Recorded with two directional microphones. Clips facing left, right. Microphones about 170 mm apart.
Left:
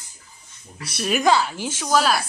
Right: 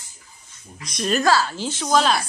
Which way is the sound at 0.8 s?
10° left (ahead or behind).